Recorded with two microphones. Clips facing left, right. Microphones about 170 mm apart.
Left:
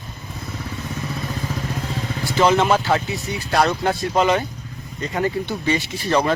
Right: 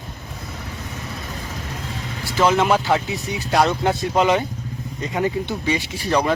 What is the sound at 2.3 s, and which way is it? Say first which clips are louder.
Speech: left 1 dB; 5° right (ahead or behind).